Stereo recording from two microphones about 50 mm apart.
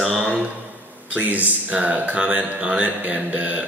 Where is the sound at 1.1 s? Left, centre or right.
Right.